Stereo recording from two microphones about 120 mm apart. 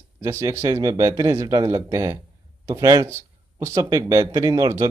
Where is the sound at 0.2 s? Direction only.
25° right (ahead or behind).